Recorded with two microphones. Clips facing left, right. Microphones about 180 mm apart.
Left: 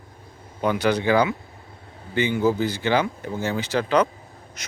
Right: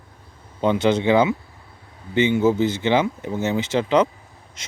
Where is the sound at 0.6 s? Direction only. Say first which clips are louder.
Right 3 dB; 25° right (ahead or behind).